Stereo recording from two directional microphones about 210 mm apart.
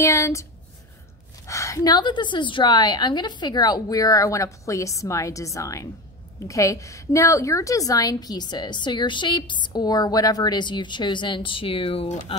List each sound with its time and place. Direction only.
0.0 s a woman's voice: 15° left (ahead or behind)
1.5 s a woman's voice: 15° left (ahead or behind)